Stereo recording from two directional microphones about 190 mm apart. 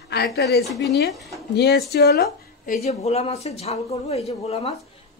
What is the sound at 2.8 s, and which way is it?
Speech, 35° left (ahead or behind).